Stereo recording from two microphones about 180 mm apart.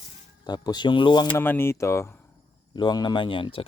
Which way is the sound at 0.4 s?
20° left (ahead or behind).